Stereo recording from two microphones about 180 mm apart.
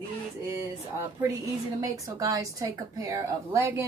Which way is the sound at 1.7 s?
20° right (ahead or behind).